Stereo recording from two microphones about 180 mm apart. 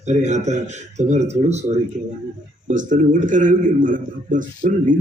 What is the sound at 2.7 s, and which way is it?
A man's voice, 45° right (ahead or behind).